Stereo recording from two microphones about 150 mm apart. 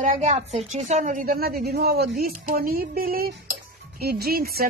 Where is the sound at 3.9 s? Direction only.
90° right.